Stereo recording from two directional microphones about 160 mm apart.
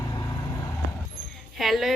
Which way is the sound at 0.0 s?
25° left (ahead or behind).